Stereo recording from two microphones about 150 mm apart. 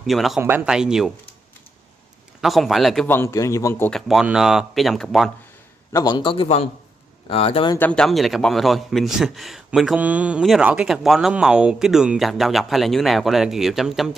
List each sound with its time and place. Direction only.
0.0 s a man's voice: centre (ahead or behind)
2.4 s a man's voice: centre (ahead or behind)
3.1 s a man's voice: 20° left (ahead or behind)
3.9 s a man's voice: centre (ahead or behind)
5.9 s a man's voice: 30° left (ahead or behind)
7.9 s a man's voice: 5° left (ahead or behind)